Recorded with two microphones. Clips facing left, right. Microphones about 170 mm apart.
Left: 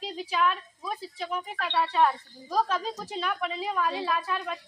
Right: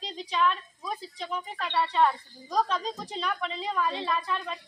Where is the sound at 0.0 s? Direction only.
5° left (ahead or behind).